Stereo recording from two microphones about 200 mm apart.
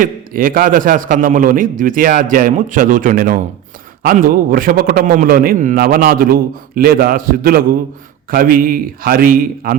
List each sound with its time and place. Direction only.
0.0 s a man's voice: 45° right (ahead or behind)